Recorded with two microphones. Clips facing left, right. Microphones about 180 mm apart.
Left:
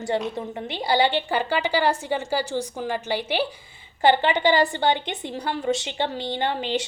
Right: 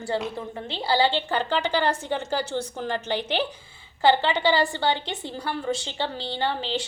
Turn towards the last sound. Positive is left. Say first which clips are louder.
# left 2 dB
turn(degrees=15)  # may be behind; listen again after turning